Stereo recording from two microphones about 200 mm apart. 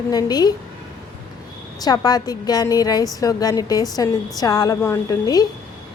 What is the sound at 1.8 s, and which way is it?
A woman's voice, 20° left (ahead or behind).